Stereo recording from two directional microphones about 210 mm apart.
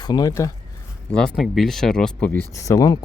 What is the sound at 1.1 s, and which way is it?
Speech, 5° left (ahead or behind).